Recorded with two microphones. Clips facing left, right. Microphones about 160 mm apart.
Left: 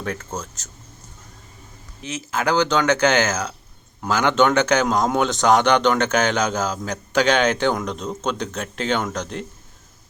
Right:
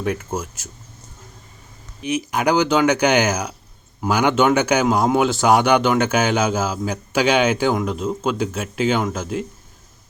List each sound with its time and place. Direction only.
0.0 s a man's voice: 10° right (ahead or behind)
2.0 s a man's voice: 15° right (ahead or behind)